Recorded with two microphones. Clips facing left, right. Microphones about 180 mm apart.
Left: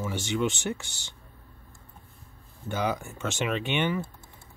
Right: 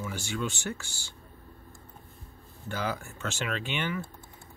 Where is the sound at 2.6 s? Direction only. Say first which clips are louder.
Left 4 dB; 20° left (ahead or behind).